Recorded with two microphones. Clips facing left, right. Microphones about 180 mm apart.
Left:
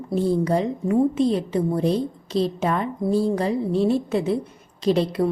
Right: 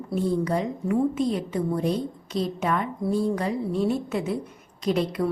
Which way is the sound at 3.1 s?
30° left (ahead or behind).